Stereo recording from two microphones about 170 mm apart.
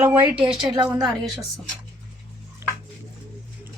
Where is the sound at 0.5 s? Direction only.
25° right (ahead or behind).